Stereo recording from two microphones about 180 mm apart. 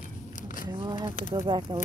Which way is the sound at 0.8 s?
30° right (ahead or behind).